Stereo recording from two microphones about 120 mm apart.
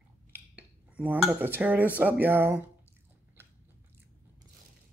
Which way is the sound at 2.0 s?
15° right (ahead or behind).